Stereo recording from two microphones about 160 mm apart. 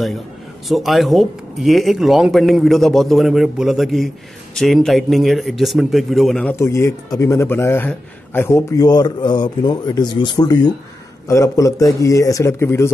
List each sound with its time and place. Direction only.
0.7 s speech: centre (ahead or behind)
6.6 s speech: 20° left (ahead or behind)